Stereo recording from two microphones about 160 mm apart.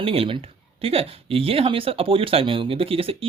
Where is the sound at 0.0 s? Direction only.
35° right (ahead or behind).